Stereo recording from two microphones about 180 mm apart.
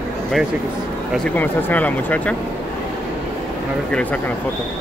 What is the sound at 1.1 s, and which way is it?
Speech, 5° left (ahead or behind).